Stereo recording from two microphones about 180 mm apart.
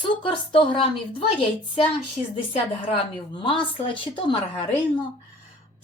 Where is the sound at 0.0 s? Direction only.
30° left (ahead or behind).